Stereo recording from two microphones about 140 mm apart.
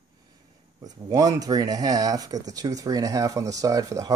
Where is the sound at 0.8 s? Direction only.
25° right (ahead or behind).